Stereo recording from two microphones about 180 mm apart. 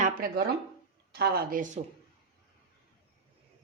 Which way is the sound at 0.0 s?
55° right (ahead or behind).